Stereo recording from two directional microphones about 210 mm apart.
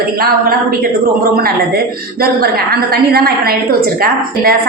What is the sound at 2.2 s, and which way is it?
A woman's voice, 45° right (ahead or behind).